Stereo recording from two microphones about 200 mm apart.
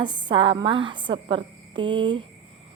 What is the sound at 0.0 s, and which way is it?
A woman's voice, 25° right (ahead or behind).